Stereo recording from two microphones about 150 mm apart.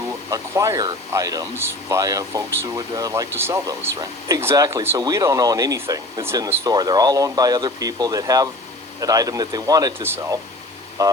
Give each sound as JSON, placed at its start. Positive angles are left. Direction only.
{"t": 0.3, "sound": "speech", "side_deg": -20}